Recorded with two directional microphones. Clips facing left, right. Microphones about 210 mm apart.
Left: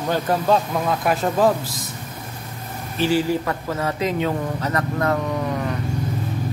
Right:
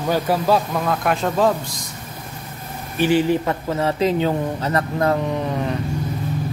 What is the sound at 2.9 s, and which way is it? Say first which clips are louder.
A man's voice: right 3 dB; 20° right (ahead or behind).